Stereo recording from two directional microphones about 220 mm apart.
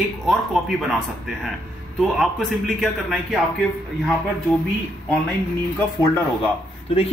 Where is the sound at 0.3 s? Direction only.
Centre (ahead or behind).